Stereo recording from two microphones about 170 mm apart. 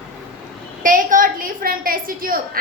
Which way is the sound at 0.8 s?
55° right (ahead or behind).